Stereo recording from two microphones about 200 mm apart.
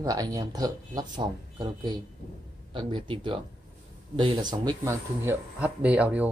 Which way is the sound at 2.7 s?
25° right (ahead or behind).